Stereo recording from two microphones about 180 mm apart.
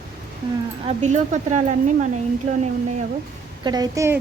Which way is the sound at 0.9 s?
40° right (ahead or behind).